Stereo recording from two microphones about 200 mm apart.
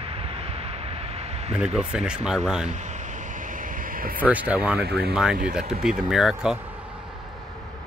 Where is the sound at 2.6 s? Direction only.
35° right (ahead or behind).